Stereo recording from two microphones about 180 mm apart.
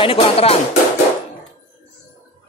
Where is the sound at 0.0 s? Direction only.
30° left (ahead or behind).